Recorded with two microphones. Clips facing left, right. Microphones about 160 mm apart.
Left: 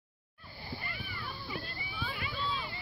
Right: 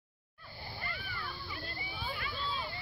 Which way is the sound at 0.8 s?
15° left (ahead or behind).